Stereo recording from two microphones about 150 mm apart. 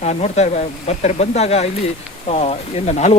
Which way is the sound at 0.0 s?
45° left (ahead or behind).